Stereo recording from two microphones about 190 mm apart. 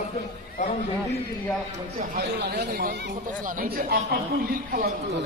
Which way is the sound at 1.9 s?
55° right (ahead or behind).